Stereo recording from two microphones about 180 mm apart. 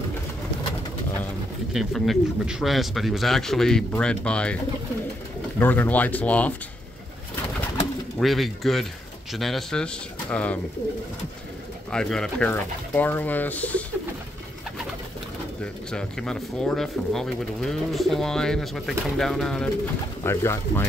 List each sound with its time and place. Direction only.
1.7 s speech: centre (ahead or behind)
5.6 s speech: 10° left (ahead or behind)
8.2 s speech: centre (ahead or behind)
11.9 s speech: 5° left (ahead or behind)
15.6 s speech: 5° left (ahead or behind)
20.2 s speech: 15° left (ahead or behind)